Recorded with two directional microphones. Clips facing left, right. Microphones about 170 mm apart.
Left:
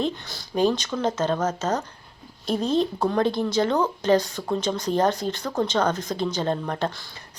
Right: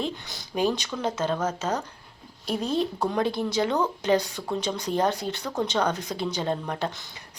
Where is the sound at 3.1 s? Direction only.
10° right (ahead or behind).